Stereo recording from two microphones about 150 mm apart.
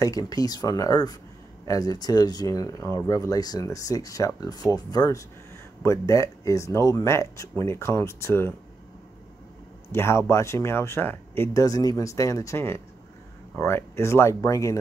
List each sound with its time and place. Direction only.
0.0 s speech: 25° left (ahead or behind)
9.9 s speech: 15° left (ahead or behind)